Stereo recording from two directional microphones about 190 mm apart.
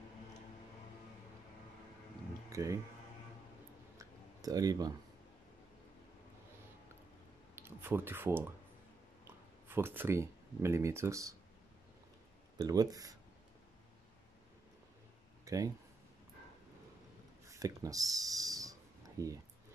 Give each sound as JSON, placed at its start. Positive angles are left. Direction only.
{"t": 2.5, "sound": "speech", "side_deg": -15}
{"t": 4.0, "sound": "clicking", "side_deg": -20}
{"t": 7.5, "sound": "speech", "side_deg": -10}
{"t": 9.7, "sound": "speech", "side_deg": -10}
{"t": 12.5, "sound": "speech", "side_deg": -20}
{"t": 15.4, "sound": "a sound", "side_deg": -20}
{"t": 17.5, "sound": "a sound", "side_deg": -15}